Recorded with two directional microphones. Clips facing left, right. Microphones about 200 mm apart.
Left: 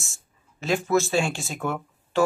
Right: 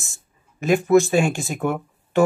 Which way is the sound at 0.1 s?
15° right (ahead or behind).